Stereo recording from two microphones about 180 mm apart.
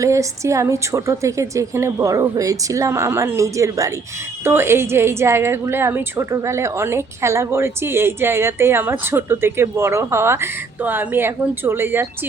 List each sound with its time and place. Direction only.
0.0 s a woman's voice: 15° right (ahead or behind)